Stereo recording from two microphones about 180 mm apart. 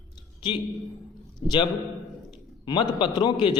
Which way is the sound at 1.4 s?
25° left (ahead or behind).